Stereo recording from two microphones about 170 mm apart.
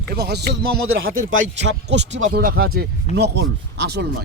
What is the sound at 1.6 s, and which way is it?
Speech, 90° right.